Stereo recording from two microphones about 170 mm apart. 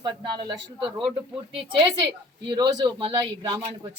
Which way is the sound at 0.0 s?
25° right (ahead or behind).